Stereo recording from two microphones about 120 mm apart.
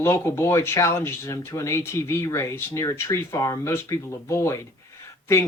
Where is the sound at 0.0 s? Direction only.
20° left (ahead or behind).